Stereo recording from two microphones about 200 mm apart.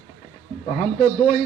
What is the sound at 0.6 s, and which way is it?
Speech, 40° left (ahead or behind).